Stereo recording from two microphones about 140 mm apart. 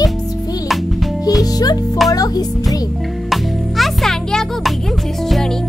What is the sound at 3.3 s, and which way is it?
Music, centre (ahead or behind).